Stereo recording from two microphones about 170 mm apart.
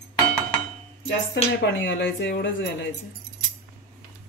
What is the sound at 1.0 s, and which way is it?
Speech, 90° left.